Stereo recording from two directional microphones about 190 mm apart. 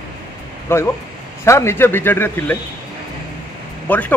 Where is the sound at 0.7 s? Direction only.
15° left (ahead or behind).